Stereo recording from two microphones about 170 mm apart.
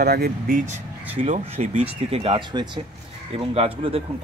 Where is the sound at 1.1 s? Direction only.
40° right (ahead or behind).